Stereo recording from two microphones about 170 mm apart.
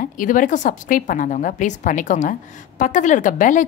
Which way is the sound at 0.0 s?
50° left (ahead or behind).